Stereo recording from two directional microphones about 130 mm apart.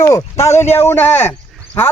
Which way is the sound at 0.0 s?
25° left (ahead or behind).